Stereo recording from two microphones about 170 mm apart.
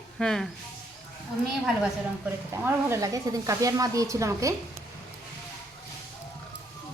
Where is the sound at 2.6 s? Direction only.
15° right (ahead or behind).